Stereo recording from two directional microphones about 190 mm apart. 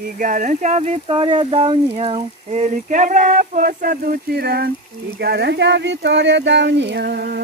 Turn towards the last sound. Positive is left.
turn(degrees=-60)  # may be behind; listen again after turning